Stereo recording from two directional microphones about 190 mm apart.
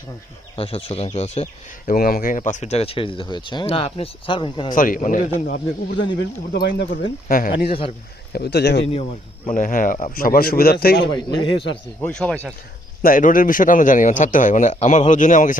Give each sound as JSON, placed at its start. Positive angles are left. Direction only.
{"t": 0.5, "sound": "speech", "side_deg": 30}
{"t": 1.9, "sound": "speech", "side_deg": 50}
{"t": 4.7, "sound": "a man's voice", "side_deg": 45}
{"t": 6.5, "sound": "a man's voice", "side_deg": 60}
{"t": 7.7, "sound": "speech", "side_deg": 30}
{"t": 8.3, "sound": "speech", "side_deg": 60}
{"t": 9.5, "sound": "a man's voice", "side_deg": 45}
{"t": 11.0, "sound": "speech", "side_deg": 20}
{"t": 12.0, "sound": "speech", "side_deg": 5}
{"t": 13.0, "sound": "a man's voice", "side_deg": 45}